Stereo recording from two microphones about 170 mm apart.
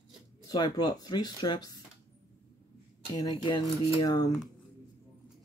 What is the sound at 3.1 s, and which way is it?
Speech, 25° left (ahead or behind).